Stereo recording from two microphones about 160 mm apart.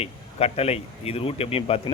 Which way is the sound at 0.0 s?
40° left (ahead or behind).